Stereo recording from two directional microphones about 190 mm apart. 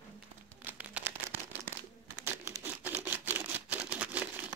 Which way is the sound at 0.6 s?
10° right (ahead or behind).